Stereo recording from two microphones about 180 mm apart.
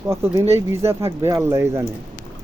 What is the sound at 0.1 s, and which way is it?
Speech, 15° right (ahead or behind).